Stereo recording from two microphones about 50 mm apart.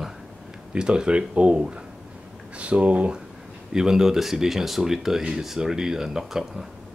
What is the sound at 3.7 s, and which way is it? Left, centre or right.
Speech, centre.